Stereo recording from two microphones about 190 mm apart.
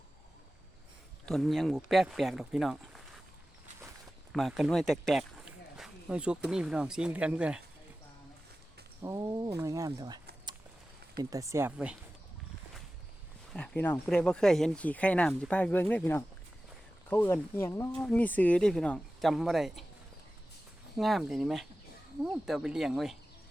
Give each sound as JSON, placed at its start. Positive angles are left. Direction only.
{"t": 1.2, "sound": "speech", "side_deg": 0}
{"t": 4.3, "sound": "speech", "side_deg": 0}
{"t": 9.0, "sound": "speech", "side_deg": -15}
{"t": 11.2, "sound": "speech", "side_deg": -15}
{"t": 13.5, "sound": "speech", "side_deg": 5}
{"t": 21.0, "sound": "speech", "side_deg": 0}